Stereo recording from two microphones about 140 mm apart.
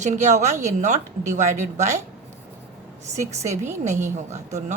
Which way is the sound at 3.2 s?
55° right (ahead or behind).